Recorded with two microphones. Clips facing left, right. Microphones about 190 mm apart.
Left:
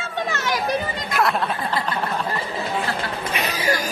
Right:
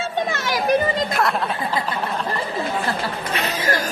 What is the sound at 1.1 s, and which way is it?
Speech, centre (ahead or behind).